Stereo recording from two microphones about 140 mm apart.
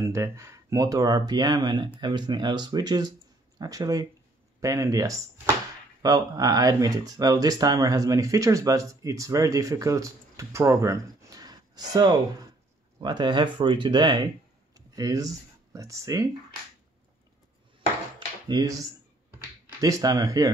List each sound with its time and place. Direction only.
0.0 s speech: 20° right (ahead or behind)
18.5 s speech: 25° right (ahead or behind)